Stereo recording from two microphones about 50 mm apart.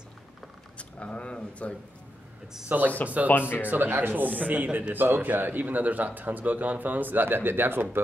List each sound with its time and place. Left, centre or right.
0.7 s speech: left
2.7 s speech: right
3.3 s speech: left
3.6 s speech: right
4.9 s a man's voice: right